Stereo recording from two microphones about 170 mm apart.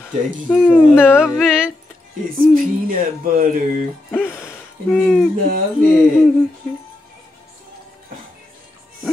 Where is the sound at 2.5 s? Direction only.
55° right (ahead or behind).